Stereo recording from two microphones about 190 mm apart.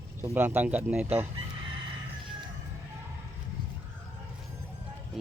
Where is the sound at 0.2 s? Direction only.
10° right (ahead or behind).